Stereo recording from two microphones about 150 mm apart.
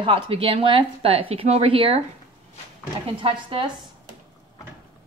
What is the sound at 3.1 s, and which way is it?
Speech, 35° right (ahead or behind).